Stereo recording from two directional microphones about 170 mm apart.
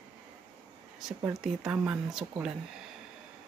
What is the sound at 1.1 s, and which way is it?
Speech, centre (ahead or behind).